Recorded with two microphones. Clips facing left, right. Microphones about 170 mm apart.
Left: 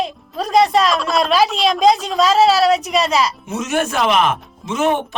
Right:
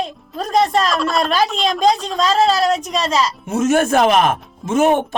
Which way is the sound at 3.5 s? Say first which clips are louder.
Right 6 dB; 50° right (ahead or behind).